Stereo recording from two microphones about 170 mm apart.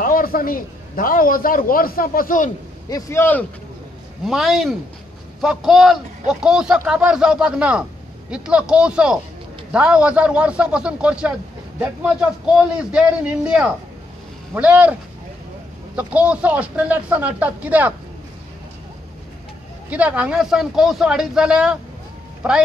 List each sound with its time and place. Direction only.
0.0 s a man's voice: 55° left (ahead or behind)
2.9 s speech: 15° left (ahead or behind)
4.2 s a man's voice: centre (ahead or behind)
16.0 s speech: 10° right (ahead or behind)
19.9 s a man's voice: 5° right (ahead or behind)